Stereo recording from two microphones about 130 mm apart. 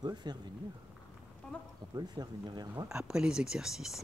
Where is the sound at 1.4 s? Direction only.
5° left (ahead or behind).